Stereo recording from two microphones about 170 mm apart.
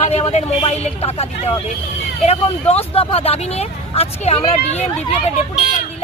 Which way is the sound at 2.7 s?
35° left (ahead or behind).